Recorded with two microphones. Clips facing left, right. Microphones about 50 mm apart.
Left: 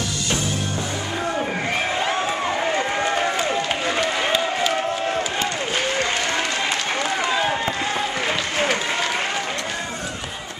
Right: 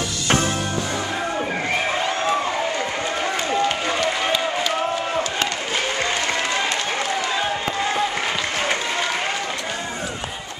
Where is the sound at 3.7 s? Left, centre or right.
Centre.